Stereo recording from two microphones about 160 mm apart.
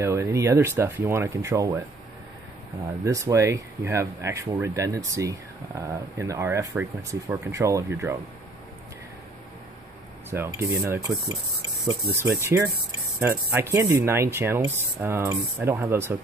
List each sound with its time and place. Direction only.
0.0 s speech: 20° right (ahead or behind)
3.1 s speech: 20° right (ahead or behind)
10.3 s speech: 15° right (ahead or behind)